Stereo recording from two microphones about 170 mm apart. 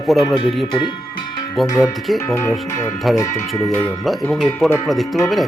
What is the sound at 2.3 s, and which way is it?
Speech, 15° left (ahead or behind).